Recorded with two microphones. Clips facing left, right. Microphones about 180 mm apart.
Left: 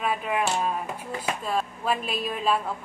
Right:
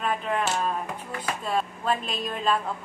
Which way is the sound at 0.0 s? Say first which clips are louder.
Left 1 dB; 5° left (ahead or behind).